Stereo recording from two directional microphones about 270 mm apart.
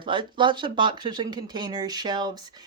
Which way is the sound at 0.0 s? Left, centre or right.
Centre.